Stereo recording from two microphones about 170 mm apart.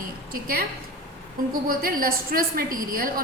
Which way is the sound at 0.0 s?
60° right (ahead or behind).